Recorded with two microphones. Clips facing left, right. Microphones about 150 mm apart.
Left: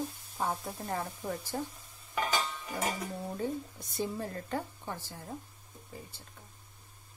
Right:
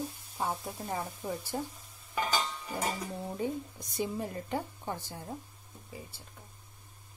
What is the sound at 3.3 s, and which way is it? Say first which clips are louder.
Speech: right 2 dB; 15° right (ahead or behind).